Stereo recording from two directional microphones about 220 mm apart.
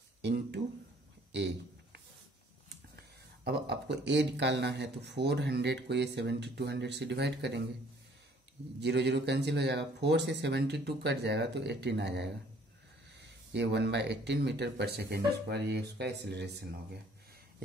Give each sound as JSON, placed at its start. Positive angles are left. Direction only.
{"t": 0.2, "sound": "a sound", "side_deg": -50}
{"t": 3.0, "sound": "speech", "side_deg": -50}
{"t": 8.7, "sound": "speech", "side_deg": -50}